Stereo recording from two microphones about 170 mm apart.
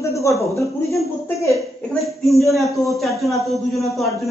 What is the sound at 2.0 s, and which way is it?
A man's voice, centre (ahead or behind).